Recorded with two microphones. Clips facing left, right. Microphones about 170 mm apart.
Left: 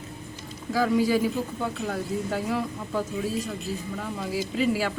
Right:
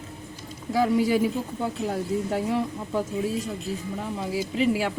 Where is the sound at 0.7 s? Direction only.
20° right (ahead or behind).